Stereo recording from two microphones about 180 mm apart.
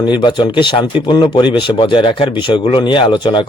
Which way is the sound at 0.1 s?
25° left (ahead or behind).